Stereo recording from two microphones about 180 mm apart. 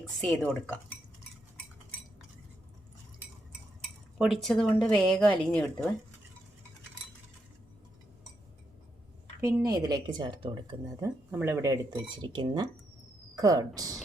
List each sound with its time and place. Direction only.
0.0 s a woman's voice: 5° left (ahead or behind)
4.2 s a woman's voice: centre (ahead or behind)
9.5 s speech: 20° right (ahead or behind)
11.3 s speech: 15° right (ahead or behind)